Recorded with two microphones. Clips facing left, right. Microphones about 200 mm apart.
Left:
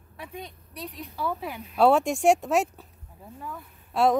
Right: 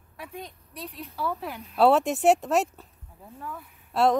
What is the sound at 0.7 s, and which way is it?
A woman's voice, 10° left (ahead or behind).